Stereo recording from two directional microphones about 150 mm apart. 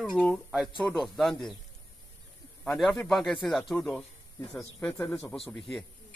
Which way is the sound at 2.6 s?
5° left (ahead or behind).